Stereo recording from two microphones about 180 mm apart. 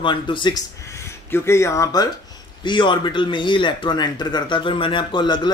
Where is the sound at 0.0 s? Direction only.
25° left (ahead or behind).